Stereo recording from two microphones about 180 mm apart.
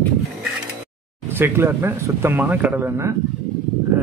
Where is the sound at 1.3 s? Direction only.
10° right (ahead or behind).